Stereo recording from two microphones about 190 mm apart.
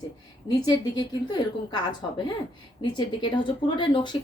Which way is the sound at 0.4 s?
20° left (ahead or behind).